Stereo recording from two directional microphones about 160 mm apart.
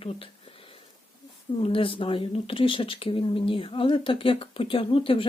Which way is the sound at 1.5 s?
35° left (ahead or behind).